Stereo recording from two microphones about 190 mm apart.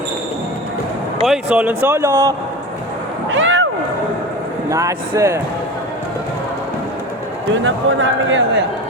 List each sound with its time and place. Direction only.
1.3 s speech: 5° right (ahead or behind)
3.2 s a sound: 90° right
4.7 s speech: 15° right (ahead or behind)
7.5 s speech: 90° right